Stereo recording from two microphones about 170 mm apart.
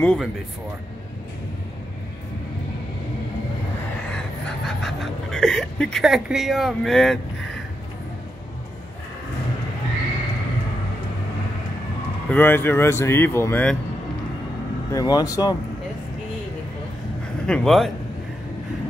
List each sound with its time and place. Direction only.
0.0 s a man's voice: 5° left (ahead or behind)
4.1 s speech: 5° left (ahead or behind)
12.3 s speech: 10° left (ahead or behind)
14.9 s speech: 20° left (ahead or behind)
17.5 s a man's voice: centre (ahead or behind)